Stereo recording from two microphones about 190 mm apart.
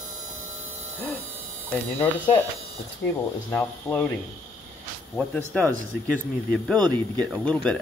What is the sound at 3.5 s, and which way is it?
Speech, 10° left (ahead or behind).